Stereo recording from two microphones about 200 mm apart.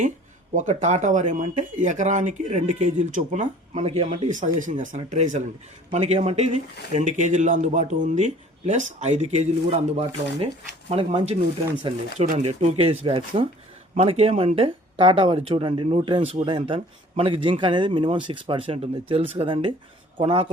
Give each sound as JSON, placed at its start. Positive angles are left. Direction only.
{"t": 0.5, "sound": "speech", "side_deg": -35}